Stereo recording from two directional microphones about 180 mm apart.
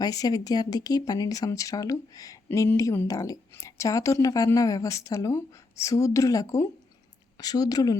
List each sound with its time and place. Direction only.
0.0 s speech: 20° left (ahead or behind)